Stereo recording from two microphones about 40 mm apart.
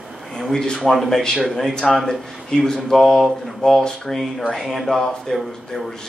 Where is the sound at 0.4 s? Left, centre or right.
Centre.